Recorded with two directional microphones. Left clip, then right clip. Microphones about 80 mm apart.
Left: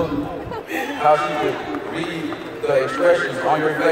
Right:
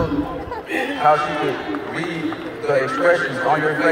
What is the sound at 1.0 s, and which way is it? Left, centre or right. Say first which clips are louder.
Speech: even; left.